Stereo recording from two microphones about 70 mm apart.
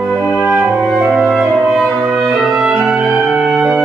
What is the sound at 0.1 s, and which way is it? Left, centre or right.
Music, centre.